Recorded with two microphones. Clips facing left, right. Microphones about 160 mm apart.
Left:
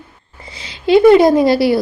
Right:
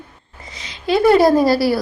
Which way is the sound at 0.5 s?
30° left (ahead or behind).